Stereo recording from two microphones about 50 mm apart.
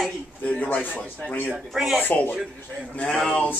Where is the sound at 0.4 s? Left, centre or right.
Left.